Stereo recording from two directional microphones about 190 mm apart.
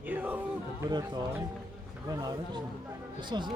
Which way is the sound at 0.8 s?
20° right (ahead or behind).